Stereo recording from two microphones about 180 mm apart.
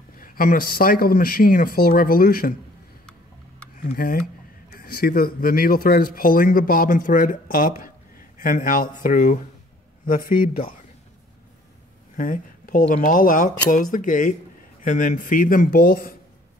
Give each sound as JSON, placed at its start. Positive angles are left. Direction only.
{"t": 0.2, "sound": "speech", "side_deg": 50}
{"t": 3.9, "sound": "speech", "side_deg": 55}
{"t": 12.2, "sound": "speech", "side_deg": 50}